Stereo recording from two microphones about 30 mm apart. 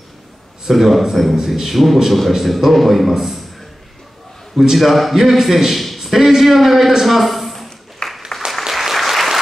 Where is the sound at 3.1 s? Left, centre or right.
Centre.